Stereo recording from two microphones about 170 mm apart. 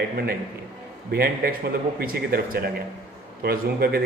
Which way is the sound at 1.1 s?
65° right (ahead or behind).